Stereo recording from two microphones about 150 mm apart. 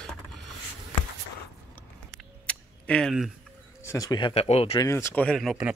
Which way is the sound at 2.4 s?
5° left (ahead or behind).